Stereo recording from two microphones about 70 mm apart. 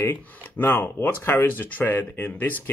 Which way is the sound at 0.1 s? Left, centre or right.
Left.